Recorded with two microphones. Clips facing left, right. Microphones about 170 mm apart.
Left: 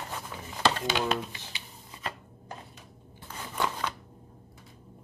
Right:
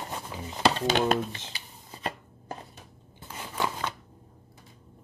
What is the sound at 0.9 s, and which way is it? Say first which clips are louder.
Speech: right 4 dB; 45° right (ahead or behind).